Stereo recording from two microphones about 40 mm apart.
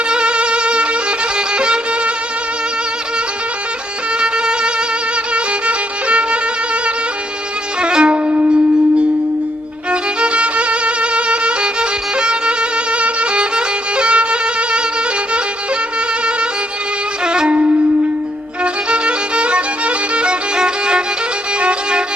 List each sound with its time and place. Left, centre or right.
0.1 s music: right
4.2 s music: right
7.8 s music: right
8.1 s wind instrument: right
9.9 s violin: right
17.2 s music: right
18.6 s violin: right